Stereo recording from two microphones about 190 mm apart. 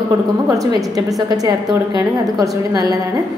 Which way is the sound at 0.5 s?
20° right (ahead or behind).